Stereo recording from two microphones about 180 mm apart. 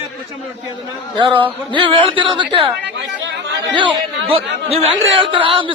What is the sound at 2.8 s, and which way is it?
Chatter, 80° right.